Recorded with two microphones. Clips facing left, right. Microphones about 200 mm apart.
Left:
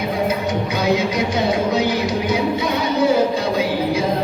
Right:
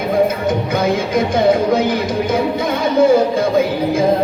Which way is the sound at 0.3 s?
50° right (ahead or behind).